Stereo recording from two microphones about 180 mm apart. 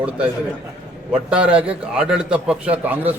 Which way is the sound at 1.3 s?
5° right (ahead or behind).